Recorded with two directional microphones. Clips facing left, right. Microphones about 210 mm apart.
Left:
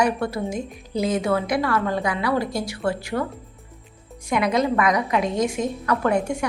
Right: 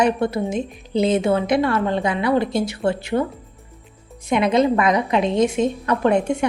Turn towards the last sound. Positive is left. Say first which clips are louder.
# right 4 dB
turn(degrees=-25)  # may be behind; listen again after turning